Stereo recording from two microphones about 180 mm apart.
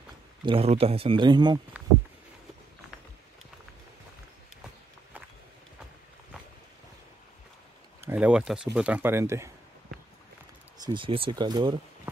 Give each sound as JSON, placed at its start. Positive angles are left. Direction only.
{"t": 0.5, "sound": "speech", "side_deg": -35}
{"t": 8.0, "sound": "a sound", "side_deg": -10}
{"t": 8.7, "sound": "speech", "side_deg": -5}
{"t": 10.9, "sound": "speech", "side_deg": -30}